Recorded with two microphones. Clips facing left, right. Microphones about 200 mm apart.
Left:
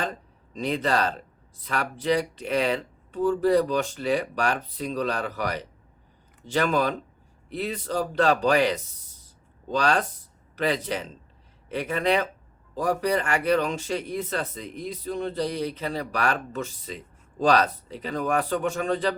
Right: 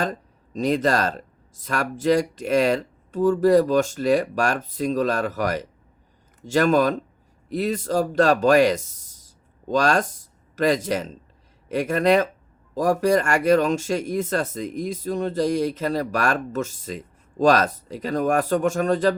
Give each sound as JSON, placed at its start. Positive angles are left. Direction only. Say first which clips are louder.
{"t": 0.0, "sound": "speech", "louder": "right 5 dB", "side_deg": -45}